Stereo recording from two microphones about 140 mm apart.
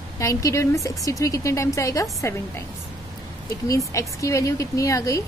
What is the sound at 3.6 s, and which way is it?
Speech, 25° left (ahead or behind).